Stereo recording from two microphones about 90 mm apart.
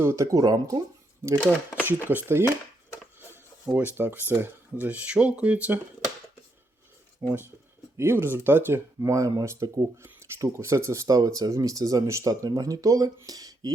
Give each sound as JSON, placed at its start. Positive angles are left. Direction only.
{"t": 0.0, "sound": "speech", "side_deg": -30}
{"t": 1.2, "sound": "speech", "side_deg": -30}
{"t": 3.7, "sound": "speech", "side_deg": -20}
{"t": 7.2, "sound": "speech", "side_deg": -25}
{"t": 13.2, "sound": "a sound", "side_deg": -45}